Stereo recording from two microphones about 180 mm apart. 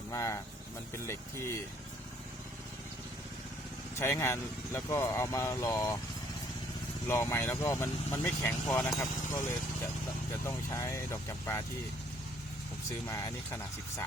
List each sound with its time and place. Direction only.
0.1 s speech: 15° left (ahead or behind)
3.9 s speech: 15° left (ahead or behind)
7.1 s speech: 15° left (ahead or behind)
10.4 s speech: 15° left (ahead or behind)
13.1 s speech: 15° left (ahead or behind)